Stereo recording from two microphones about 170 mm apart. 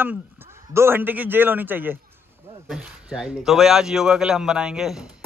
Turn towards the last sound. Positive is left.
turn(degrees=-5)  # may be behind; listen again after turning